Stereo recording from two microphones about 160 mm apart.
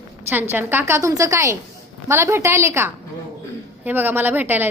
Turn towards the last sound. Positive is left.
turn(degrees=-10)  # may be behind; listen again after turning